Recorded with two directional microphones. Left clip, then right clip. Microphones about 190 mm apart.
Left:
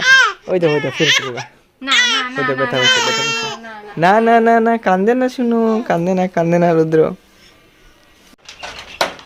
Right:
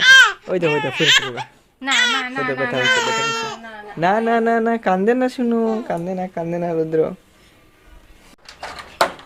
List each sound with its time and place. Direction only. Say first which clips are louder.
0.0 s baby cry: right 1 dB; 20° right (ahead or behind)
0.6 s speech: left 2 dB; 15° right (ahead or behind)
1.9 s speech: left 3 dB; 10° left (ahead or behind)
2.3 s speech: left 4 dB; 15° right (ahead or behind)
2.7 s speech: left 3 dB; 10° left (ahead or behind)
4.0 s speech: left 6 dB; 20° left (ahead or behind)
5.9 s speech: left 8 dB; 35° left (ahead or behind)